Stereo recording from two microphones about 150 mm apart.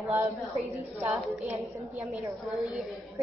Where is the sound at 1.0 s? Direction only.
10° right (ahead or behind).